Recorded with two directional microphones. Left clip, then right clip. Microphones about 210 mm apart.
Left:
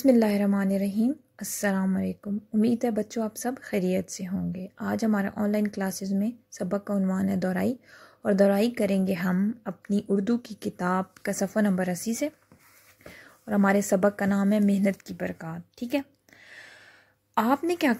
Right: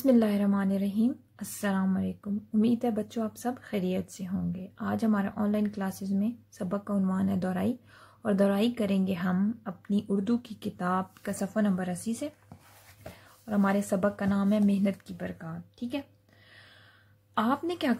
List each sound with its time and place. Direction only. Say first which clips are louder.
0.0 s a woman's voice: left 3 dB; 25° left (ahead or behind)
13.5 s speech: left 5 dB; 30° left (ahead or behind)